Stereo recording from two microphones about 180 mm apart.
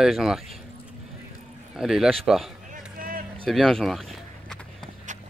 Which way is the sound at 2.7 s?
50° right (ahead or behind).